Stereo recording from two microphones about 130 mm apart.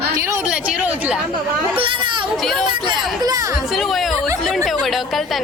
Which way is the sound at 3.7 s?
Centre (ahead or behind).